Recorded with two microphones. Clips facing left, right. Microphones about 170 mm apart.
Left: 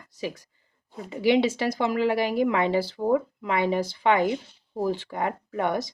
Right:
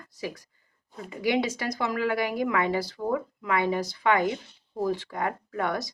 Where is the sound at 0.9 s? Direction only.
25° left (ahead or behind).